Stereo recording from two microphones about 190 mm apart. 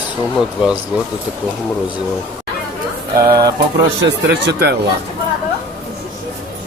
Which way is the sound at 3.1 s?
20° right (ahead or behind).